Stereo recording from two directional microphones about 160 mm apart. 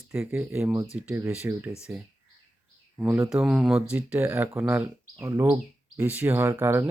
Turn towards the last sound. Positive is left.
turn(degrees=-15)  # may be behind; listen again after turning